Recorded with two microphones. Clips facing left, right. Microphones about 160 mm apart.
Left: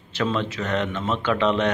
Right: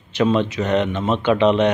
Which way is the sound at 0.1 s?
20° right (ahead or behind).